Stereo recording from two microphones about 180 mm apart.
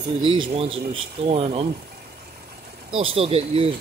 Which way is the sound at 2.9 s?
30° right (ahead or behind).